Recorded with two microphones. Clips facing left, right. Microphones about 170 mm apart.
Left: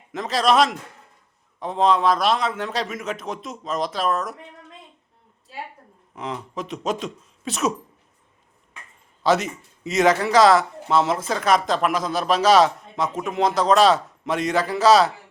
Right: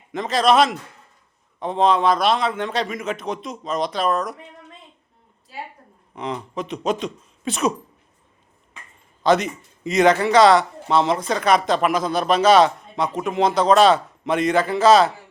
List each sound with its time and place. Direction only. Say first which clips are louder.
0.1 s speech: right 2 dB; centre (ahead or behind)
6.1 s speech: right 3 dB; centre (ahead or behind)
9.2 s speech: right 2 dB; centre (ahead or behind)